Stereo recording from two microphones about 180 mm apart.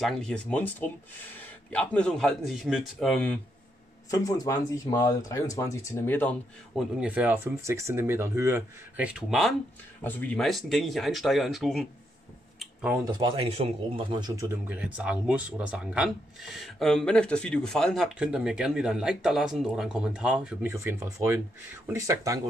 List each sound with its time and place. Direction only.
0.0 s speech: 5° left (ahead or behind)
4.1 s speech: 20° left (ahead or behind)
6.7 s speech: 5° right (ahead or behind)
12.5 s a sound: 5° right (ahead or behind)
13.0 s a man's voice: 25° right (ahead or behind)
14.7 s speech: 5° right (ahead or behind)
20.7 s speech: 15° right (ahead or behind)